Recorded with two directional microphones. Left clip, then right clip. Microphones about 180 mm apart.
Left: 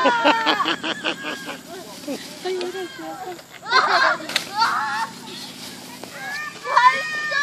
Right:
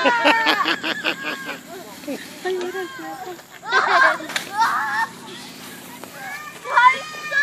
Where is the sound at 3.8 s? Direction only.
20° left (ahead or behind).